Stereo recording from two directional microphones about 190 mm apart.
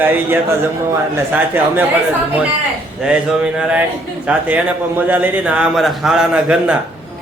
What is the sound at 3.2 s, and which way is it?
A man's voice, 5° right (ahead or behind).